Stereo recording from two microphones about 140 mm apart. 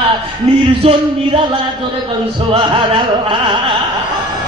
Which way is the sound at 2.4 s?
35° right (ahead or behind).